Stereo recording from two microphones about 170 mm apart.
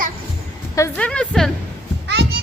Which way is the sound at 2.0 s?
90° right.